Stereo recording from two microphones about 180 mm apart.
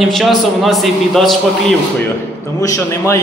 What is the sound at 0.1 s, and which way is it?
A man's voice, centre (ahead or behind).